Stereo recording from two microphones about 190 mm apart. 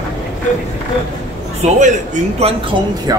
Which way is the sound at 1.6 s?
35° right (ahead or behind).